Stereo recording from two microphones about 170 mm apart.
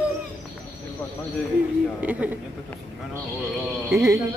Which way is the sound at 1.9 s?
10° right (ahead or behind).